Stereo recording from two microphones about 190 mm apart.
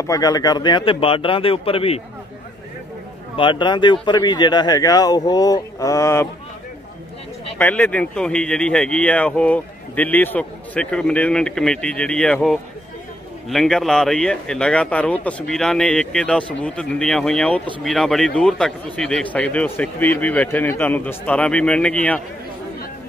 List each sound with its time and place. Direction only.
0.0 s speech: 20° left (ahead or behind)
3.3 s speech: 25° left (ahead or behind)
7.5 s a man's voice: 5° left (ahead or behind)